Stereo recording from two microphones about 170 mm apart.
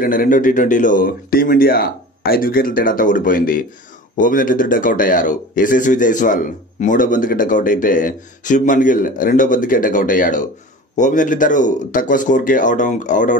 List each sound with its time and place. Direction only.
0.0 s speech: 55° left (ahead or behind)